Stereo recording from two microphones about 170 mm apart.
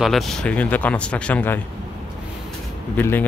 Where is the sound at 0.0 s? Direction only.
Centre (ahead or behind).